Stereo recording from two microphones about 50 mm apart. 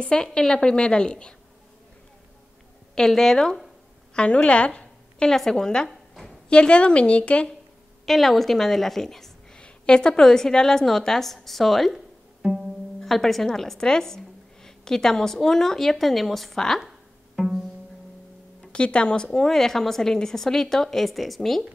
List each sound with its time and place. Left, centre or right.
0.0 s a woman's voice: centre
2.9 s a woman's voice: centre
4.1 s a woman's voice: left
5.3 s a woman's voice: centre
5.9 s a sound: centre
6.5 s a woman's voice: left
8.0 s a woman's voice: centre
9.6 s a woman's voice: centre
12.4 s pizzicato: centre
13.0 s a woman's voice: centre
17.4 s pizzicato: centre
18.7 s a woman's voice: left; by 21.6 s centre